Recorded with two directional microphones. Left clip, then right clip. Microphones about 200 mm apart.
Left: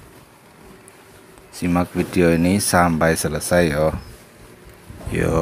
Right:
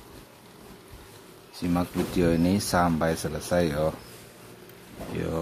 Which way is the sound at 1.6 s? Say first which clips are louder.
Left 7 dB; 15° left (ahead or behind).